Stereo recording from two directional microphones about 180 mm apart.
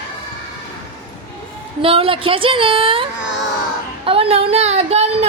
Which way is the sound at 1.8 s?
30° right (ahead or behind).